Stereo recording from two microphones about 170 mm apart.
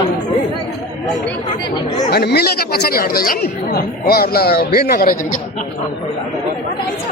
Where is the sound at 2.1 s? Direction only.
75° left (ahead or behind).